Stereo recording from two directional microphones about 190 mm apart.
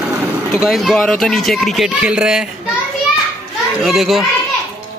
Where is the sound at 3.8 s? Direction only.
Centre (ahead or behind).